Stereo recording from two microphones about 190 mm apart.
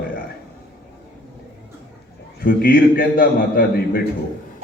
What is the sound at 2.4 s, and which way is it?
A man's voice, 50° left (ahead or behind).